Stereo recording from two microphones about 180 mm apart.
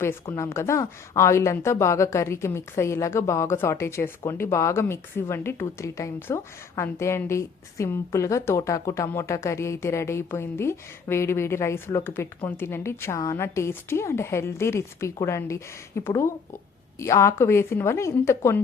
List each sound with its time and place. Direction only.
0.0 s a woman's voice: 15° left (ahead or behind)